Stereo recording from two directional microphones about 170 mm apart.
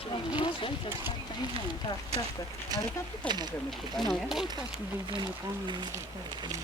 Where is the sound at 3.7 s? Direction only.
Centre (ahead or behind).